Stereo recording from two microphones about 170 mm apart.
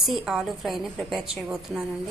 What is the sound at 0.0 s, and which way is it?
A woman's voice, centre (ahead or behind).